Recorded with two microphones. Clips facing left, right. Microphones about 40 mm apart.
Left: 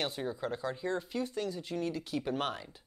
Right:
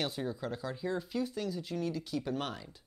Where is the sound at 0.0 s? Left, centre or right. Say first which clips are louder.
Left 1 dB; centre.